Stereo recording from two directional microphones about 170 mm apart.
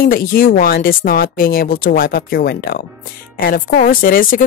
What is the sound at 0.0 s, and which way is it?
A woman's voice, 60° left (ahead or behind).